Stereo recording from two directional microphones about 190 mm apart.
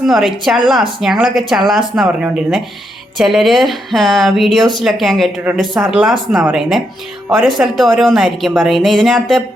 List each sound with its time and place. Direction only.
0.0 s a woman's voice: centre (ahead or behind)